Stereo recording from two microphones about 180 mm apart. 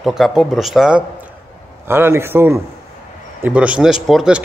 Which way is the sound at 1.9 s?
15° right (ahead or behind).